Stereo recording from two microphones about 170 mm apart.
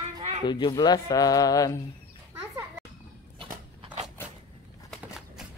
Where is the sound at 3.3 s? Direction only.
30° right (ahead or behind).